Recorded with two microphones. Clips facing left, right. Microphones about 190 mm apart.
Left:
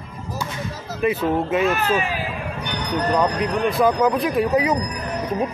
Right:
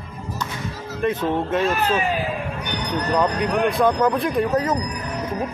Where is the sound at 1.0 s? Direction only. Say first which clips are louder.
Left 1 dB; 5° left (ahead or behind).